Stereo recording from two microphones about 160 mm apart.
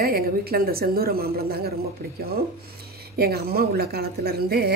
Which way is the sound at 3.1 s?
75° right (ahead or behind).